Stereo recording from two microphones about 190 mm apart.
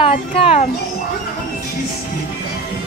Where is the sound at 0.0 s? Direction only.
30° left (ahead or behind).